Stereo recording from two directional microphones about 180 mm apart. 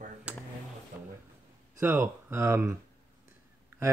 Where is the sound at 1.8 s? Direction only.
10° right (ahead or behind).